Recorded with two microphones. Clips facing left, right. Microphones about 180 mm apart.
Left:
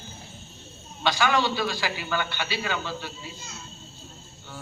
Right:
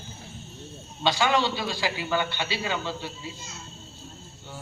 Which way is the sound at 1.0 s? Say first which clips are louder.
Even; 25° right (ahead or behind).